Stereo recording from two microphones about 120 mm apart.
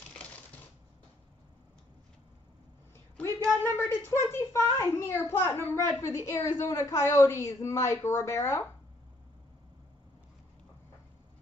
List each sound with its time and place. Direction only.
3.2 s a woman's voice: 15° left (ahead or behind)